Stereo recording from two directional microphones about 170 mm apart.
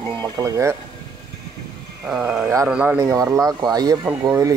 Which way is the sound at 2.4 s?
20° right (ahead or behind).